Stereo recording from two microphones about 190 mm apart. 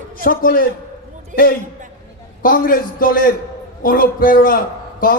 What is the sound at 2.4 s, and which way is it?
A man's voice, 50° left (ahead or behind).